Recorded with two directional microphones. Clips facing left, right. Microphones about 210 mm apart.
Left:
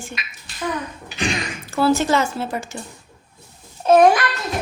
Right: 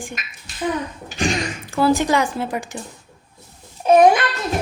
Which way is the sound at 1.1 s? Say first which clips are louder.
Right 2 dB; 45° right (ahead or behind).